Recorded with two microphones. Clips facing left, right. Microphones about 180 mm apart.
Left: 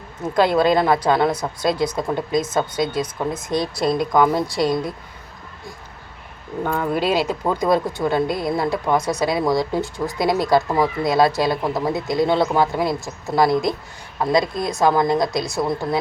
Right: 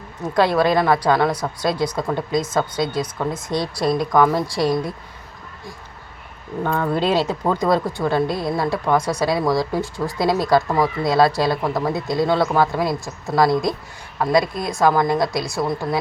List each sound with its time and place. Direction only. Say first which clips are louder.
0.3 s speech: left 1 dB; 20° left (ahead or behind)
6.7 s speech: right 1 dB; 10° left (ahead or behind)